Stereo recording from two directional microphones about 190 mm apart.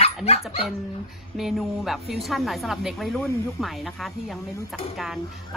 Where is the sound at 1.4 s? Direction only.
Centre (ahead or behind).